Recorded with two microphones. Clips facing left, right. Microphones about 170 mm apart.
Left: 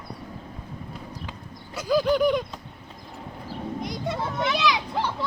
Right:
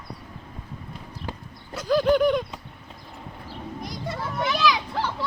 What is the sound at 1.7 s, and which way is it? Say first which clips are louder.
Speech: right 2 dB; 5° left (ahead or behind).